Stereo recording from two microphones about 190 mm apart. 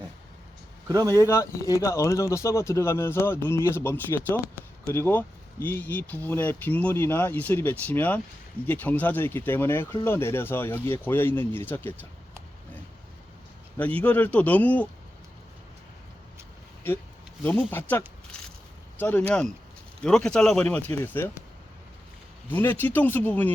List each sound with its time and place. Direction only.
0.9 s speech: 20° right (ahead or behind)
1.3 s speech: 15° left (ahead or behind)
13.7 s speech: 10° left (ahead or behind)
17.4 s speech: 10° left (ahead or behind)
22.4 s speech: 10° left (ahead or behind)